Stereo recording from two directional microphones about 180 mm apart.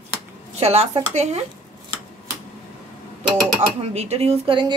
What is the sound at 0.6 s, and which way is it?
Speech, 35° right (ahead or behind).